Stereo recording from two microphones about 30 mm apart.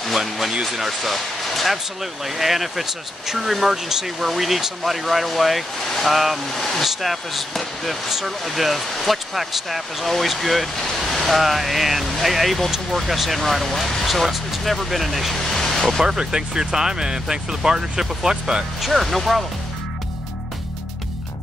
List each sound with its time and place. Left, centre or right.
0.1 s speech: centre
2.2 s speech: centre
8.1 s speech: centre
14.2 s speech: centre
15.3 s a sound: centre
16.0 s speech: right
18.8 s speech: centre